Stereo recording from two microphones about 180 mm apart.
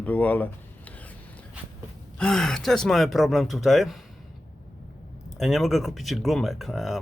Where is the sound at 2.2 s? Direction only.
5° left (ahead or behind).